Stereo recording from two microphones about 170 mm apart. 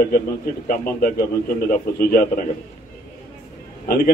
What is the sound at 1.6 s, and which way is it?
Speech, 60° left (ahead or behind).